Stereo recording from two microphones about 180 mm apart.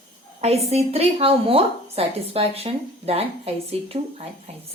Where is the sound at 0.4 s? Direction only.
35° right (ahead or behind).